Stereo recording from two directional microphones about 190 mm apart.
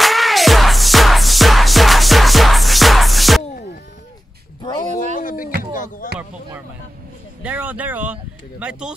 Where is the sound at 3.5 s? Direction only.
50° left (ahead or behind).